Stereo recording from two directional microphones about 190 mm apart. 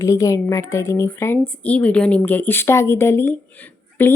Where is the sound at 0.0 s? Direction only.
15° left (ahead or behind).